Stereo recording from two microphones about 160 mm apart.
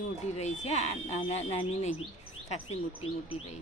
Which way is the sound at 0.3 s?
45° left (ahead or behind).